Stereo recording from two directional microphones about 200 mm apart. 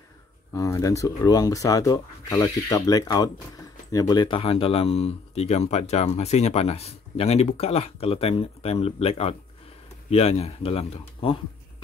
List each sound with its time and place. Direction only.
0.5 s speech: 15° left (ahead or behind)